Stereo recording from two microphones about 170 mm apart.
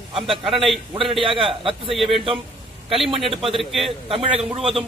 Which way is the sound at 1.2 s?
30° right (ahead or behind).